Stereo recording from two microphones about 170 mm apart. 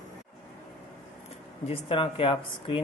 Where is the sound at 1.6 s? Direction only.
35° left (ahead or behind).